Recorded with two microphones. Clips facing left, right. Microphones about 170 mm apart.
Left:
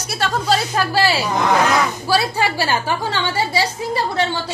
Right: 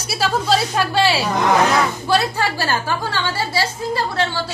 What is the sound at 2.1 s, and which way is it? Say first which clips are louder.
A woman's voice: left 1 dB; 10° left (ahead or behind).